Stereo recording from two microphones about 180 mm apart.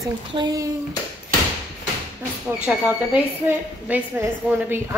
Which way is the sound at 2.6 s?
10° right (ahead or behind).